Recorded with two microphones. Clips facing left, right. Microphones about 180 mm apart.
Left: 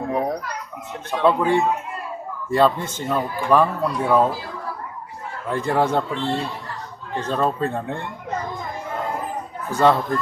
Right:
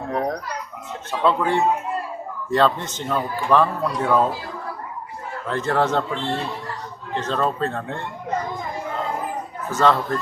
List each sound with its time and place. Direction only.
0.1 s children playing: 10° left (ahead or behind)
1.2 s a man's voice: 15° left (ahead or behind)
5.5 s a man's voice: 10° left (ahead or behind)
7.2 s a man's voice: 10° left (ahead or behind)
9.7 s a man's voice: 15° left (ahead or behind)